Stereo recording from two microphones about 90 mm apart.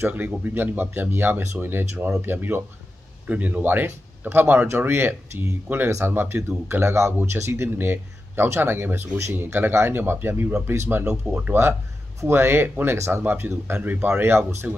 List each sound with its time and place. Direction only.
0.0 s speech: 20° right (ahead or behind)
12.2 s speech: 25° right (ahead or behind)